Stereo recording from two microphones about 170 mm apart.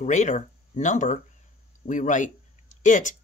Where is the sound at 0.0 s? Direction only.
45° left (ahead or behind).